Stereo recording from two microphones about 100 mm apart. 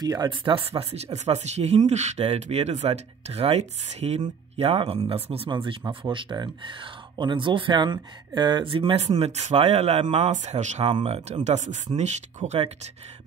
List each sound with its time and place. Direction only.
0.0 s speech: 45° right (ahead or behind); by 4.2 s 90° right
4.6 s speech: 75° right (ahead or behind)
5.5 s speech: 55° right (ahead or behind); by 9.1 s 80° right
9.2 s speech: 90° right
12.5 s speech: 90° right